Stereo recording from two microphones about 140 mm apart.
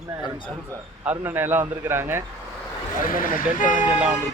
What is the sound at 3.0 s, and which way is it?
Speech, 85° left.